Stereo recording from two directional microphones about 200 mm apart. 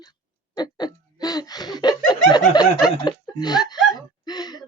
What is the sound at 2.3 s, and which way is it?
Speech, 20° left (ahead or behind).